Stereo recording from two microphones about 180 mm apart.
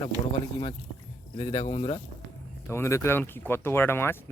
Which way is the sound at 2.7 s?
15° left (ahead or behind).